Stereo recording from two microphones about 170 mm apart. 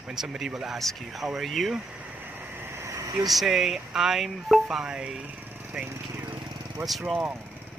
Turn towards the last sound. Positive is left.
turn(degrees=0)  # may be behind; listen again after turning